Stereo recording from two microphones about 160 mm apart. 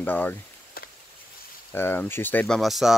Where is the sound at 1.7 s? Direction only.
15° left (ahead or behind); by 3.0 s centre (ahead or behind).